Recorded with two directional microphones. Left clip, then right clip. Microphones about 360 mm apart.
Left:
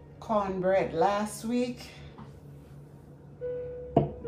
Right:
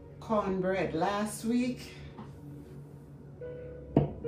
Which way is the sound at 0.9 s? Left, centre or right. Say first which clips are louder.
Left 5 dB; centre.